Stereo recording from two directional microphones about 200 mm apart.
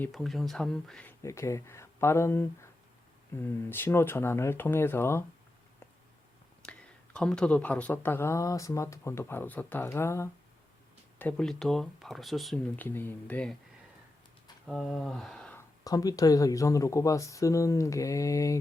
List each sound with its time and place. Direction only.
0.0 s speech: centre (ahead or behind)
1.2 s speech: 15° left (ahead or behind)
6.6 s speech: 5° left (ahead or behind)
14.7 s speech: centre (ahead or behind)
15.8 s speech: 20° left (ahead or behind)